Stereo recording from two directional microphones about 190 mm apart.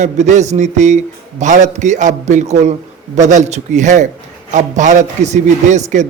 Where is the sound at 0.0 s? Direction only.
40° right (ahead or behind).